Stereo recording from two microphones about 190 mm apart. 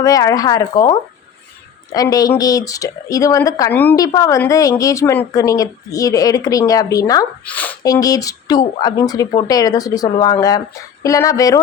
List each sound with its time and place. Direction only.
0.0 s speech: 20° left (ahead or behind)
7.9 s speech: 20° left (ahead or behind)